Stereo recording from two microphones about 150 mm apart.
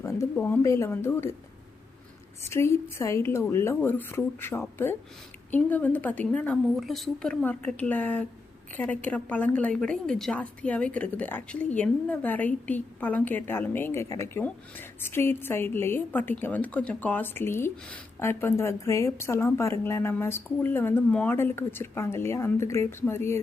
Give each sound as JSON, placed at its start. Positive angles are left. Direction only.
{"t": 0.3, "sound": "a woman's voice", "side_deg": 10}
{"t": 2.5, "sound": "a woman's voice", "side_deg": 20}